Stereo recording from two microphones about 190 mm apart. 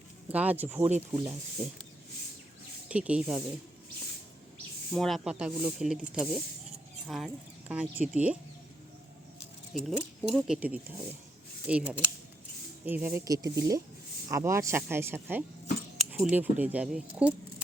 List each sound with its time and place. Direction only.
0.3 s speech: 10° right (ahead or behind)
1.6 s speech: 30° right (ahead or behind)
2.9 s speech: 5° right (ahead or behind)
4.9 s speech: centre (ahead or behind)
9.7 s speech: 5° right (ahead or behind)